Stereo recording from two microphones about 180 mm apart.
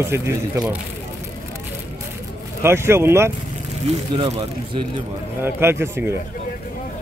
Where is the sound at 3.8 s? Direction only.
30° right (ahead or behind).